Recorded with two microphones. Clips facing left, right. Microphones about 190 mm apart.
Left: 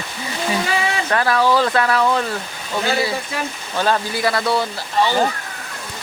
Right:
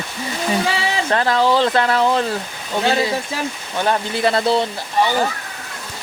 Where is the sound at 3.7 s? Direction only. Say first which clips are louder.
Left 1 dB; 20° right (ahead or behind).